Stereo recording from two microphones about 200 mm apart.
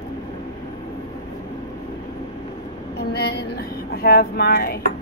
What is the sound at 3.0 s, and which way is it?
Speech, 50° left (ahead or behind).